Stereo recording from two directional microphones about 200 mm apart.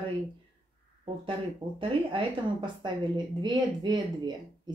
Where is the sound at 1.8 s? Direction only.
25° right (ahead or behind).